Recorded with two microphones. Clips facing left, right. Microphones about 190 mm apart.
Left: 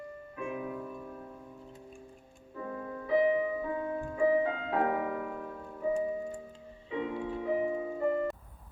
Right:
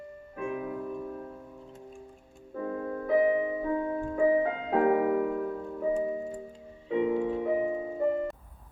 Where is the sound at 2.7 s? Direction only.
45° right (ahead or behind).